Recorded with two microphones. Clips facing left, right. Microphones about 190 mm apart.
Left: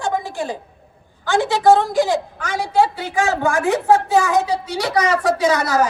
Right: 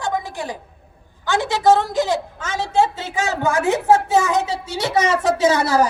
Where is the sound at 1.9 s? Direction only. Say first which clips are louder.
Left 2 dB; 20° right (ahead or behind).